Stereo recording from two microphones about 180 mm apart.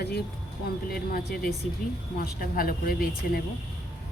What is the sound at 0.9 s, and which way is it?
A woman's voice, 55° left (ahead or behind).